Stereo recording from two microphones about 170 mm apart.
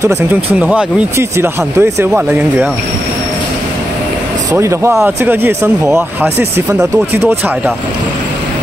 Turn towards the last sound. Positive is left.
turn(degrees=-10)  # may be behind; listen again after turning